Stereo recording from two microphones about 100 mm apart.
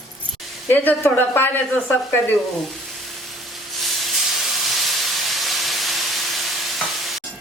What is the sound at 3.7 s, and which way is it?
Steam, centre (ahead or behind).